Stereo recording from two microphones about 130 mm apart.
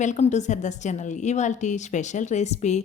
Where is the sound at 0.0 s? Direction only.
65° left (ahead or behind).